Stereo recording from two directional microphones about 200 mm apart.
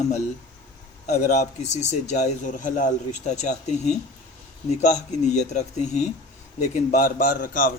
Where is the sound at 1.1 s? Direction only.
40° left (ahead or behind).